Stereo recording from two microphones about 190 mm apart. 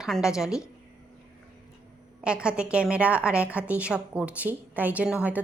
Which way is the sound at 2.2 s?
5° right (ahead or behind).